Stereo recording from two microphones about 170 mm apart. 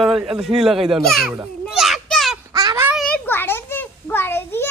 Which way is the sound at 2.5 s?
20° right (ahead or behind).